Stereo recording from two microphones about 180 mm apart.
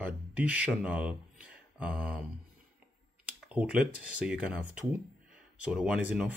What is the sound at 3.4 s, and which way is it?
Speech, 5° right (ahead or behind).